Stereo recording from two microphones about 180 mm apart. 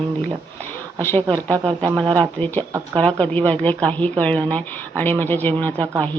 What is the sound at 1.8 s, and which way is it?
Speech, 25° right (ahead or behind).